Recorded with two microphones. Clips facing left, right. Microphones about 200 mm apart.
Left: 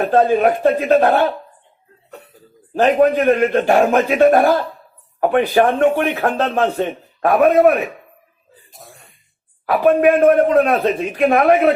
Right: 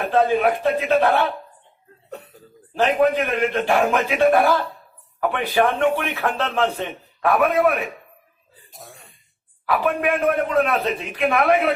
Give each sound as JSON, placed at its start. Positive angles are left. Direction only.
{"t": 0.0, "sound": "a man's voice", "side_deg": 40}
{"t": 2.7, "sound": "a man's voice", "side_deg": 45}
{"t": 8.7, "sound": "throat clearing", "side_deg": 0}
{"t": 9.7, "sound": "a man's voice", "side_deg": 45}